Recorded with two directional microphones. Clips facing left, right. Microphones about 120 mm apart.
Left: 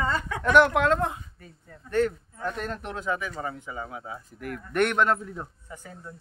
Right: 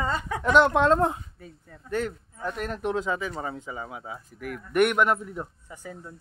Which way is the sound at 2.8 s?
20° right (ahead or behind).